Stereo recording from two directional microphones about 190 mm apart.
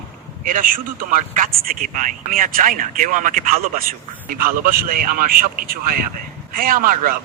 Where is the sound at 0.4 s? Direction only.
45° right (ahead or behind).